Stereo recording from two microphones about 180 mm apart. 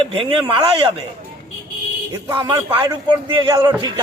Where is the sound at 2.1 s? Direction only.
25° right (ahead or behind).